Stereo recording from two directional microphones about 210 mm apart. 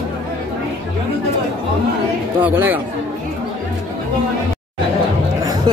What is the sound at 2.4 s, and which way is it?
Speech, 10° right (ahead or behind).